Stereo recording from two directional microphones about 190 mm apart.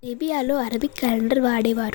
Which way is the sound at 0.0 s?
45° left (ahead or behind).